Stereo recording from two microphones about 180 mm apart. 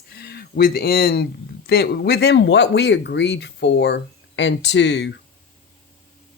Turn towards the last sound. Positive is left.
turn(degrees=70)  # may be behind; listen again after turning